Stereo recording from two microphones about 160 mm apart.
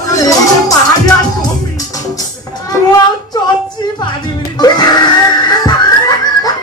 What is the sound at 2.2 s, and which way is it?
Music, 25° left (ahead or behind).